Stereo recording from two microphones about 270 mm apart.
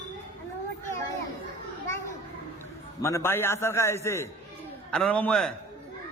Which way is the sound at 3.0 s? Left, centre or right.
Centre.